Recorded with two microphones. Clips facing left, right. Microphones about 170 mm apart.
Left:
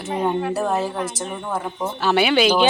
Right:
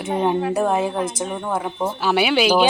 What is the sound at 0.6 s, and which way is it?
Speech, 10° right (ahead or behind).